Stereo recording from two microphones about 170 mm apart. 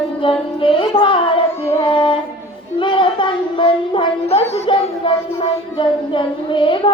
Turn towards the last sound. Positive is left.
turn(degrees=30)  # may be behind; listen again after turning